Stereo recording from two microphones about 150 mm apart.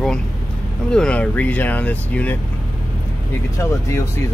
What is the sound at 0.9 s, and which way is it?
Speech, 5° left (ahead or behind).